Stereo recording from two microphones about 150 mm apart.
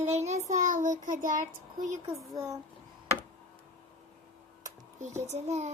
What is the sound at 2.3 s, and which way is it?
Child singing, 20° right (ahead or behind).